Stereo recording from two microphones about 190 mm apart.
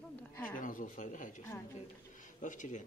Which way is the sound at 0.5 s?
45° left (ahead or behind).